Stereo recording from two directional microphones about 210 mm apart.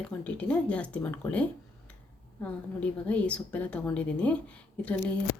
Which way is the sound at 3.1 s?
5° left (ahead or behind).